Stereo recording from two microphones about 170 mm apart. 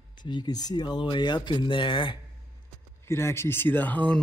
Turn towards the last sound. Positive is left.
turn(degrees=10)  # may be behind; listen again after turning